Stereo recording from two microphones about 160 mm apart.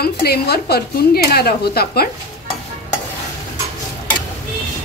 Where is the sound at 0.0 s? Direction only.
80° left.